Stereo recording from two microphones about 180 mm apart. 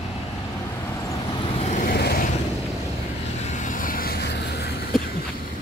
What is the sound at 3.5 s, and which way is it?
Vehicle, 45° left (ahead or behind).